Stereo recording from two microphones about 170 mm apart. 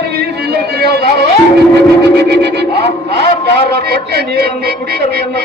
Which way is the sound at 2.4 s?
80° right.